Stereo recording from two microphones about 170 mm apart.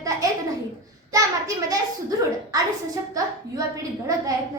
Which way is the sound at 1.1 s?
20° right (ahead or behind).